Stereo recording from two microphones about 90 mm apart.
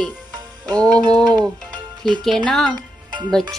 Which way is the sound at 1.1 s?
10° left (ahead or behind).